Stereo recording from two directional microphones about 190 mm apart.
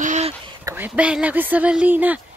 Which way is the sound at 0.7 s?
10° right (ahead or behind).